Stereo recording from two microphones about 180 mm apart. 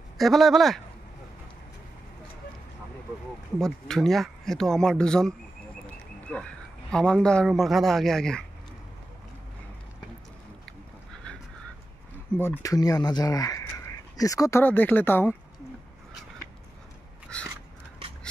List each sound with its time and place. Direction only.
0.2 s speech: centre (ahead or behind)
3.5 s speech: 5° left (ahead or behind)
12.4 s speech: 15° left (ahead or behind)
17.3 s a sound: 5° left (ahead or behind)